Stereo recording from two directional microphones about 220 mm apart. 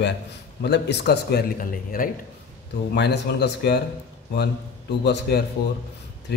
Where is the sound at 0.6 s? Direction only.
50° left (ahead or behind).